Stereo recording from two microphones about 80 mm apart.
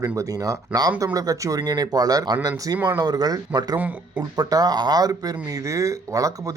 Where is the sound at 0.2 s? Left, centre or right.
Right.